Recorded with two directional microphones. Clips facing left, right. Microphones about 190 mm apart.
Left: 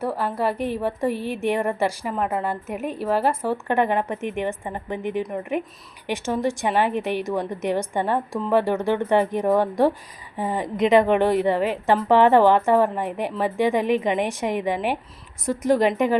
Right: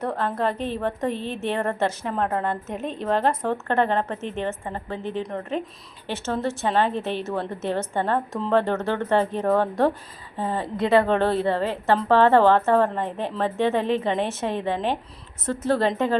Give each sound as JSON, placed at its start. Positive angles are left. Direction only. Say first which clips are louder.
{"t": 0.0, "sound": "a woman's voice", "louder": "left 1 dB", "side_deg": 10}